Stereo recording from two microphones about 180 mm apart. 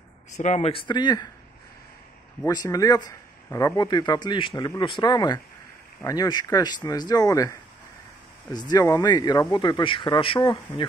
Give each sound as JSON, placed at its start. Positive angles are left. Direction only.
{"t": 0.4, "sound": "speech", "side_deg": 40}
{"t": 2.4, "sound": "speech", "side_deg": 20}
{"t": 8.5, "sound": "speech", "side_deg": 20}